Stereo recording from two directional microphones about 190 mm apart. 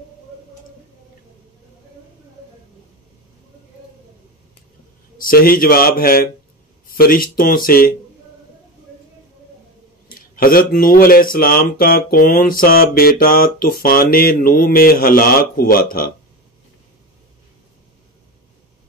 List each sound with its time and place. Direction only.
5.2 s speech: 50° left (ahead or behind)
10.0 s speech: 50° left (ahead or behind)